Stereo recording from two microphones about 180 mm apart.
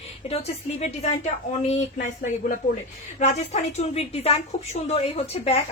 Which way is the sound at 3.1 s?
40° left (ahead or behind).